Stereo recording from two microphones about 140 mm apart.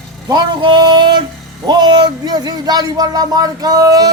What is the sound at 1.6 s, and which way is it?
Speech, 30° right (ahead or behind).